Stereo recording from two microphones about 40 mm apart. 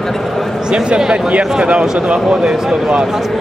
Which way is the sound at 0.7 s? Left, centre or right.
Right.